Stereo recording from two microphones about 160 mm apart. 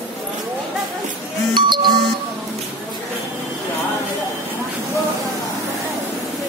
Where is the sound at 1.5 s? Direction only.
30° right (ahead or behind).